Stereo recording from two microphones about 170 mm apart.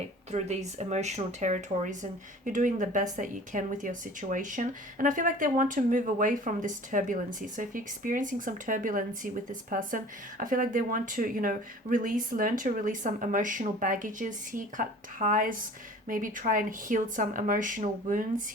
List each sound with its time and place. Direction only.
0.3 s speech: 40° right (ahead or behind)